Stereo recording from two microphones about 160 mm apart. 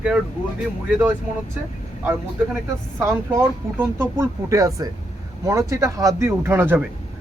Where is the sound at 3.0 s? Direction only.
15° right (ahead or behind).